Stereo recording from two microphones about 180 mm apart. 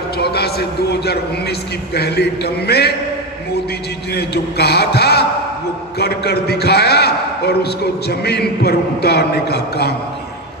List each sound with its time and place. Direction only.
0.2 s a man's voice: 65° left (ahead or behind)
4.1 s a man's voice: 65° left (ahead or behind)